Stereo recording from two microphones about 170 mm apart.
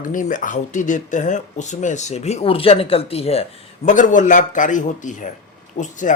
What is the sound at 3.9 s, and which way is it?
Speech, 50° left (ahead or behind).